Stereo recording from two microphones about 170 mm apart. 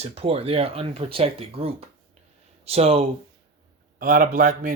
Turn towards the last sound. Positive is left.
turn(degrees=-50)  # may be behind; listen again after turning